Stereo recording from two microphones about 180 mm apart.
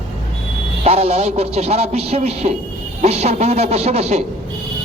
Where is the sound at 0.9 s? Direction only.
35° right (ahead or behind).